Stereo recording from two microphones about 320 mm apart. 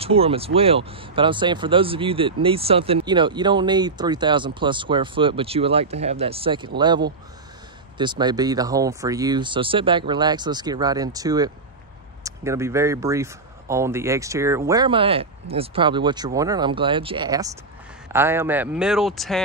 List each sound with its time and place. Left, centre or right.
0.0 s speech: centre